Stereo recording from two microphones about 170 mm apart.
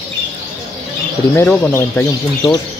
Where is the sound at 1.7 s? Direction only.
15° left (ahead or behind).